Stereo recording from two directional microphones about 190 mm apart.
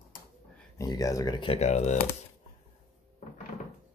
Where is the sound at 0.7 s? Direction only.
20° left (ahead or behind); by 2.0 s 35° left (ahead or behind).